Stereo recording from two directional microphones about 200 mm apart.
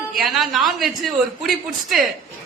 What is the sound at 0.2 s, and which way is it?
A man's voice, centre (ahead or behind).